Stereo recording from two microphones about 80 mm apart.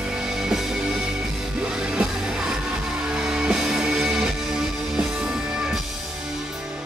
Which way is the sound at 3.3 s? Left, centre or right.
Centre.